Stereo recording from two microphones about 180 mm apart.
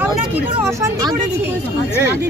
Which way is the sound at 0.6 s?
15° right (ahead or behind).